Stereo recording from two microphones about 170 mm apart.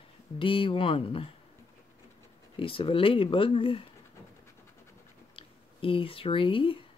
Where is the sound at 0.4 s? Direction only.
30° left (ahead or behind).